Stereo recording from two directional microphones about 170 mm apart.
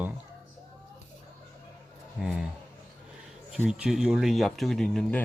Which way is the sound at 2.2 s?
5° right (ahead or behind).